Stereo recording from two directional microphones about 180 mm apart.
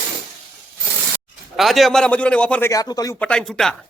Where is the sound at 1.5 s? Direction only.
Centre (ahead or behind).